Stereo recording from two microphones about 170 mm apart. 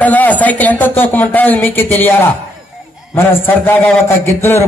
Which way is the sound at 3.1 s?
10° left (ahead or behind).